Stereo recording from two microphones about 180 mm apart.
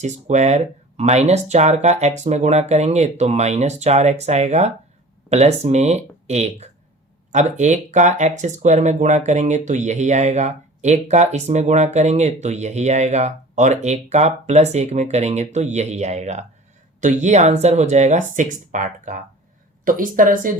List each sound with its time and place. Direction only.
0.0 s speech: 40° right (ahead or behind)